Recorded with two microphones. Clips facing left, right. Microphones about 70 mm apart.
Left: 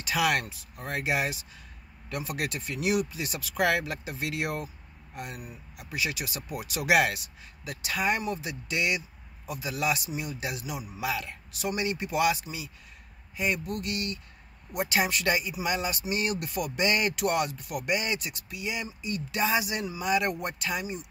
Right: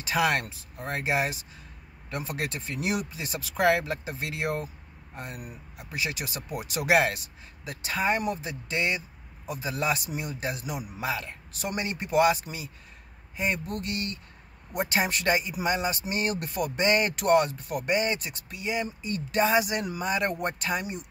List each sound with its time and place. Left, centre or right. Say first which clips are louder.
0.0 s a man's voice: right 1 dB; right
20.1 s a man's voice: left 1 dB; right